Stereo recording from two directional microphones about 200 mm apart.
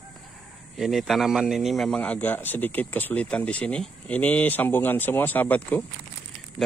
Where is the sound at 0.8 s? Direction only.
Centre (ahead or behind).